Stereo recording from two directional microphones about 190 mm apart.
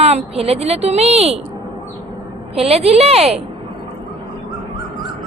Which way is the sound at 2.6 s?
30° right (ahead or behind).